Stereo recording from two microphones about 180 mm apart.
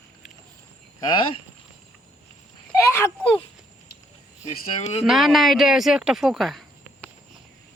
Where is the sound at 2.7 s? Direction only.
15° left (ahead or behind).